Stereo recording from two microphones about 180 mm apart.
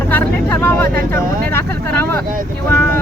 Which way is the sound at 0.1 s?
10° left (ahead or behind).